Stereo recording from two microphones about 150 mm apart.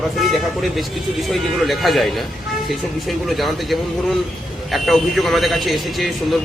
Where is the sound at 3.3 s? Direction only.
Centre (ahead or behind).